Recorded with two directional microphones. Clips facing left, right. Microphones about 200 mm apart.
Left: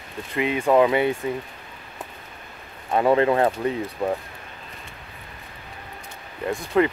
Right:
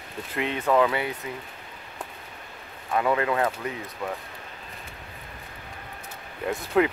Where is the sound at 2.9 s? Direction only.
30° left (ahead or behind).